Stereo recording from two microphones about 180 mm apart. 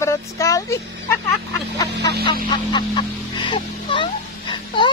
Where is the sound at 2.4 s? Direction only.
25° left (ahead or behind).